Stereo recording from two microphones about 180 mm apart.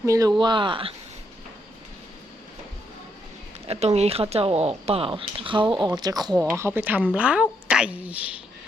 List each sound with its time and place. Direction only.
0.0 s speech: 20° right (ahead or behind)
3.7 s a woman's voice: 35° right (ahead or behind); by 8.3 s 10° right (ahead or behind)